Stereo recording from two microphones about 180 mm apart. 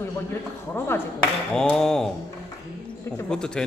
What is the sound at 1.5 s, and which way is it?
Speech, 5° left (ahead or behind).